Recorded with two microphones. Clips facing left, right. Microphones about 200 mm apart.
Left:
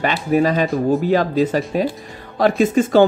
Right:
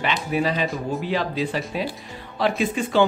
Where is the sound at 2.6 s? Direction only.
45° left (ahead or behind).